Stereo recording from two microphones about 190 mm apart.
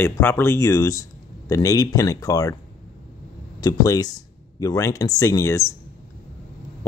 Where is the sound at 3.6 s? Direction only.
20° left (ahead or behind).